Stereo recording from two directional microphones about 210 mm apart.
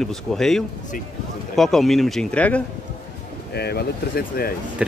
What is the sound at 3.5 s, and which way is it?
Speech, 50° left (ahead or behind).